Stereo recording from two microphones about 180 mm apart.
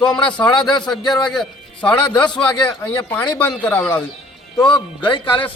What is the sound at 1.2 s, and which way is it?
A man's voice, 5° left (ahead or behind).